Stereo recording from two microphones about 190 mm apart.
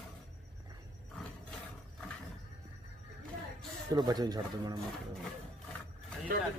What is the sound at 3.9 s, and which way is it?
Speech, 20° right (ahead or behind).